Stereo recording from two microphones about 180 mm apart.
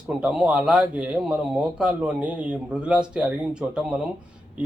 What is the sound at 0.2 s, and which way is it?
Speech, 5° right (ahead or behind).